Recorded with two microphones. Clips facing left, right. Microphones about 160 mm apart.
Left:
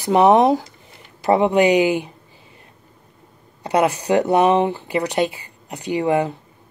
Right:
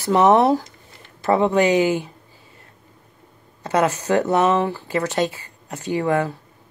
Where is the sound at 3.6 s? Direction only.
15° left (ahead or behind).